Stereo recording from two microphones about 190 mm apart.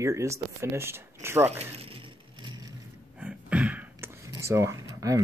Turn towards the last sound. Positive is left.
turn(degrees=-15)  # may be behind; listen again after turning